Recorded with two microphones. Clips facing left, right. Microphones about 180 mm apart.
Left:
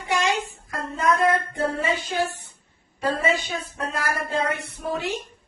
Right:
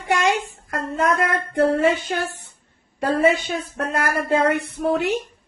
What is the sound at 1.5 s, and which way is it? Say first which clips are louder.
A woman's voice: right 7 dB; 60° right (ahead or behind).